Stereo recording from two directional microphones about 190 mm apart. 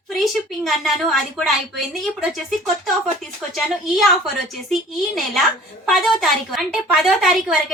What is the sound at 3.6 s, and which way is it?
A woman's voice, centre (ahead or behind).